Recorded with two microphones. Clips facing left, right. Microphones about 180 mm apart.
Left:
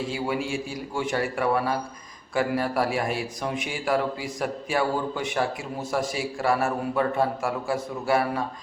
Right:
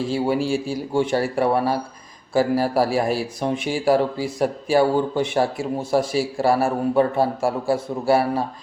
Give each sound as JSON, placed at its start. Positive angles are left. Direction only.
{"t": 0.1, "sound": "a man's voice", "side_deg": -30}